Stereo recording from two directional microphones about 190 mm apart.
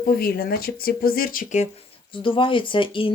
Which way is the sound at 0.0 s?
50° left (ahead or behind).